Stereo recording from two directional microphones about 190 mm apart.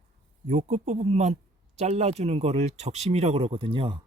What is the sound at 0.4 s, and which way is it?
Speech, 35° right (ahead or behind).